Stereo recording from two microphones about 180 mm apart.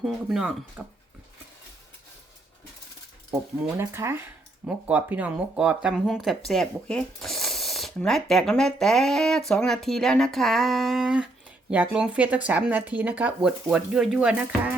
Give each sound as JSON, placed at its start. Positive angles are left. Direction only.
{"t": 0.0, "sound": "speech", "side_deg": 0}
{"t": 3.8, "sound": "speech", "side_deg": -15}